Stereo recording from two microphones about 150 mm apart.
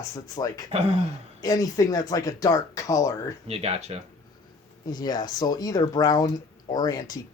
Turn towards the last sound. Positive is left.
turn(degrees=25)  # may be behind; listen again after turning